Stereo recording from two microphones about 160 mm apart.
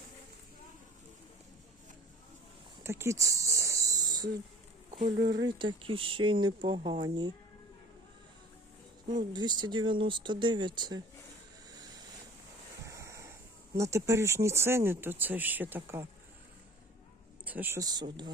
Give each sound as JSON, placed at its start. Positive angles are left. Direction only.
{"t": 2.8, "sound": "a sound", "side_deg": -15}
{"t": 4.9, "sound": "speech", "side_deg": -45}
{"t": 5.3, "sound": "speech", "side_deg": -30}
{"t": 9.0, "sound": "speech", "side_deg": -25}
{"t": 12.8, "sound": "a sound", "side_deg": -20}
{"t": 13.7, "sound": "speech", "side_deg": -20}
{"t": 17.4, "sound": "speech", "side_deg": -10}